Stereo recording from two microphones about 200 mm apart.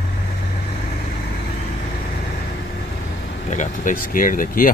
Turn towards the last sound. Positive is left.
turn(degrees=40)  # may be behind; listen again after turning